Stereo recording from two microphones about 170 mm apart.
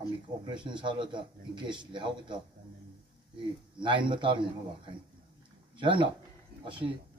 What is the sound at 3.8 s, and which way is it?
Speech, 30° right (ahead or behind).